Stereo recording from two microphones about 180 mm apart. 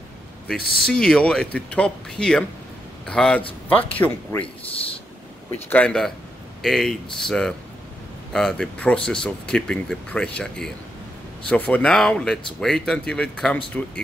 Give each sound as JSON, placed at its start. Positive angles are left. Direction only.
{"t": 0.6, "sound": "speech", "side_deg": 60}
{"t": 0.8, "sound": "speech", "side_deg": 5}
{"t": 5.5, "sound": "speech", "side_deg": 10}